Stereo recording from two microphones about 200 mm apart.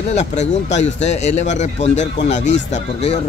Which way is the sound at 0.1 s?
35° left (ahead or behind).